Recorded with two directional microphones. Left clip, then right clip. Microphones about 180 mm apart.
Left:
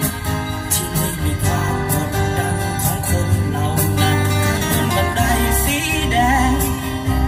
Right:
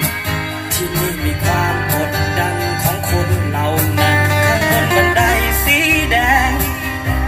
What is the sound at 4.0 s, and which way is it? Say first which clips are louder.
Music: right 6 dB; 55° left (ahead or behind).